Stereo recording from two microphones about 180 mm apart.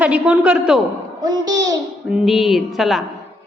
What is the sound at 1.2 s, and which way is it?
Speech, 20° right (ahead or behind).